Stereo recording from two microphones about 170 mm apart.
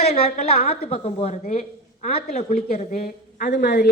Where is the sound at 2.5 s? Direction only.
60° left (ahead or behind).